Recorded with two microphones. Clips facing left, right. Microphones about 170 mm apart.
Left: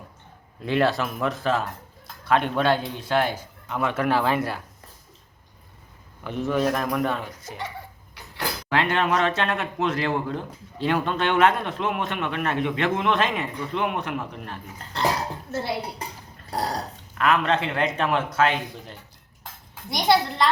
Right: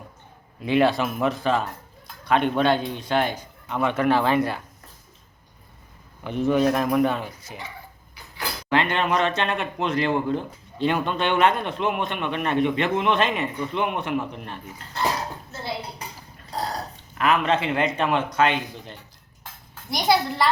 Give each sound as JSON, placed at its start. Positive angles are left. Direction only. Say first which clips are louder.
{"t": 0.6, "sound": "speech", "louder": "right 2 dB", "side_deg": -5}
{"t": 6.2, "sound": "speech", "louder": "right 3 dB", "side_deg": 0}
{"t": 8.7, "sound": "speech", "louder": "right 1 dB", "side_deg": 5}
{"t": 17.2, "sound": "speech", "louder": "even", "side_deg": 0}